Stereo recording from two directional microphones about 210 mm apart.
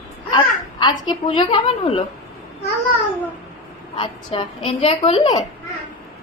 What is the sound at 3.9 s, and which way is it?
A woman's voice, 25° left (ahead or behind).